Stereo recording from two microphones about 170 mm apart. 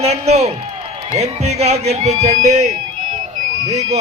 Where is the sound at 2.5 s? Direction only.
45° right (ahead or behind).